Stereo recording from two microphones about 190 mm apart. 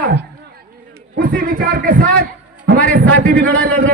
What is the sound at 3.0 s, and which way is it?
Speech, 50° right (ahead or behind).